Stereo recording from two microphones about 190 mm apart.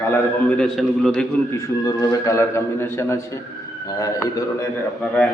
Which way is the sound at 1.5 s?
15° left (ahead or behind).